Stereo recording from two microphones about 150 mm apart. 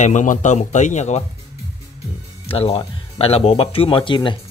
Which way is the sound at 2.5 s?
40° left (ahead or behind).